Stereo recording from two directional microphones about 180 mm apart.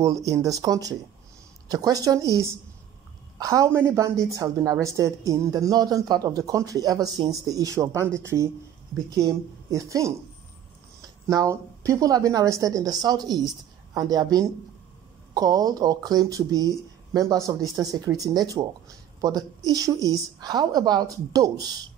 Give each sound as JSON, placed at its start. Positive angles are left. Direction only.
{"t": 0.0, "sound": "a woman's voice", "side_deg": -20}
{"t": 9.1, "sound": "a woman's voice", "side_deg": -20}
{"t": 11.2, "sound": "a woman's voice", "side_deg": -20}